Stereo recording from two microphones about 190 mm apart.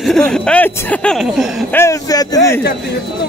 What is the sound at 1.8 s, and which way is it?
Speech, 15° left (ahead or behind).